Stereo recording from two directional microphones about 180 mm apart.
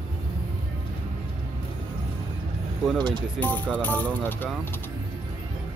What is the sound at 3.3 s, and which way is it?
Speech, 10° left (ahead or behind).